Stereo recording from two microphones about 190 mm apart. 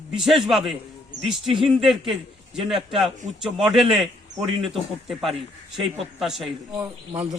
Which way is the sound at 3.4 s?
Centre (ahead or behind).